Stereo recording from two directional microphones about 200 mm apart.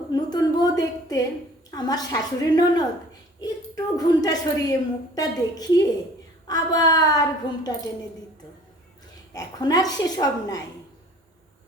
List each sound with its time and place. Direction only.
0.1 s a woman's voice: 20° left (ahead or behind)
9.3 s a woman's voice: 20° left (ahead or behind)